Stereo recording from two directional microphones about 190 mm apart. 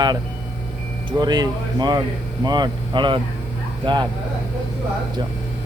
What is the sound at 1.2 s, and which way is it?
Speech, 20° right (ahead or behind).